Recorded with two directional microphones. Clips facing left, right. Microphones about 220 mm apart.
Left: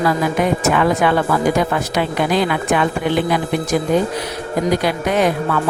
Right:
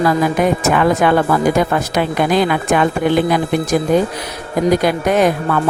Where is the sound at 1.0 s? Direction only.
45° right (ahead or behind).